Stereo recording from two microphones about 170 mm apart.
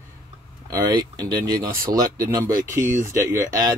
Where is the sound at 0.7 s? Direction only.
25° right (ahead or behind).